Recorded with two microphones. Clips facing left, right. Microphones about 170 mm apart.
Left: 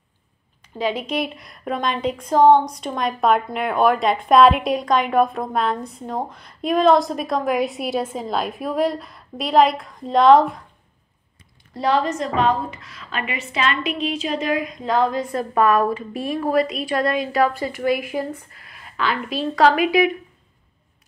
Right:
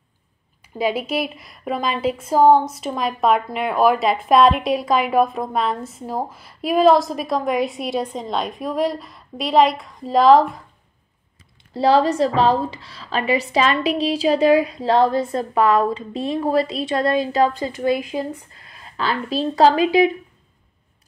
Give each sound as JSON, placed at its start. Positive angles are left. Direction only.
{"t": 0.7, "sound": "a woman's voice", "side_deg": -10}
{"t": 11.7, "sound": "a woman's voice", "side_deg": -30}